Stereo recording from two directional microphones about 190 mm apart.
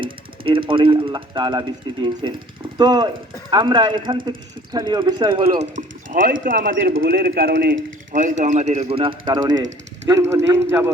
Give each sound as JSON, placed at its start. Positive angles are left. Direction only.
{"t": 0.0, "sound": "speech", "side_deg": -25}
{"t": 6.4, "sound": "speech", "side_deg": -45}
{"t": 7.0, "sound": "speech", "side_deg": -55}
{"t": 8.1, "sound": "speech", "side_deg": -40}